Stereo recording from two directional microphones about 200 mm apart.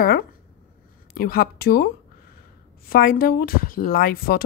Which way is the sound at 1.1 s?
45° left (ahead or behind).